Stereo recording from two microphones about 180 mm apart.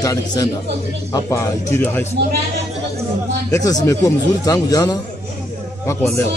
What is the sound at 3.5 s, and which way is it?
A man's voice, 20° left (ahead or behind).